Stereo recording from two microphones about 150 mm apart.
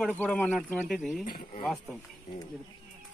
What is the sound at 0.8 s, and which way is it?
Speech, centre (ahead or behind).